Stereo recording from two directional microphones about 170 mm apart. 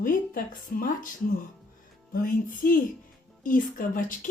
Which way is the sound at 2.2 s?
55° left (ahead or behind).